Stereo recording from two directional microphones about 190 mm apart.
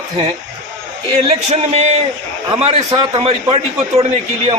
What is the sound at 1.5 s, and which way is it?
A man's voice, 35° right (ahead or behind).